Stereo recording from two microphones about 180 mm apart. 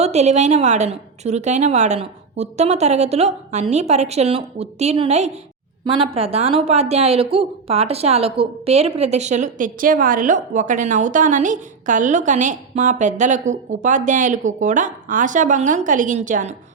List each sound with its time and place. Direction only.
0.0 s a woman's voice: 40° right (ahead or behind)